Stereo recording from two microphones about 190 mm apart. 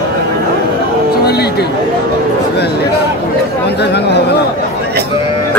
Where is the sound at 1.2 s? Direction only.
60° left (ahead or behind).